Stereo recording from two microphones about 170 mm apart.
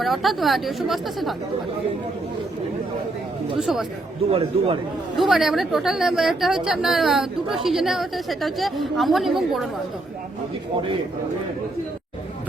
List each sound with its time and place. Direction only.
0.0 s a woman's voice: centre (ahead or behind)
3.6 s a woman's voice: centre (ahead or behind)
4.3 s a man's voice: 35° right (ahead or behind)
5.1 s a woman's voice: centre (ahead or behind)